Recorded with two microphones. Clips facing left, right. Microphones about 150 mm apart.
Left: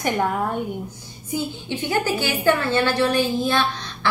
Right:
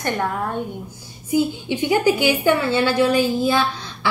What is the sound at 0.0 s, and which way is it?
Speech, 10° left (ahead or behind).